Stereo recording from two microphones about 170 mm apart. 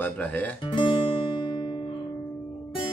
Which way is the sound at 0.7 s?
30° left (ahead or behind).